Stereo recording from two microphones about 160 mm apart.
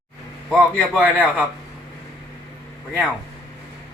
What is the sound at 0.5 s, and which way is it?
Speech, centre (ahead or behind).